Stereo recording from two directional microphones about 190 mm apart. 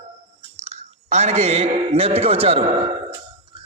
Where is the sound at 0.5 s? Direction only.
35° right (ahead or behind).